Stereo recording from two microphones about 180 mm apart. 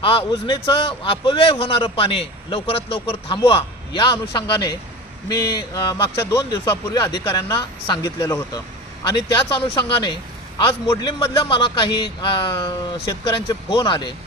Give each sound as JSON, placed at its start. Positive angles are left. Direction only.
{"t": 0.0, "sound": "a man's voice", "side_deg": 30}